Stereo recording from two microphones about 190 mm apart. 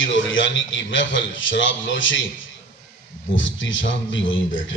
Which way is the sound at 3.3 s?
80° left.